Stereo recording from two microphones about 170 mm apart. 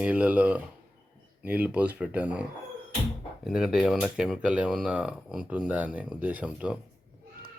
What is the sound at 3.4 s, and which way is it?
Speech, 5° right (ahead or behind).